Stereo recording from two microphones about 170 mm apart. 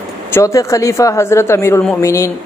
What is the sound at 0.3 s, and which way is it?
Speech, 20° left (ahead or behind).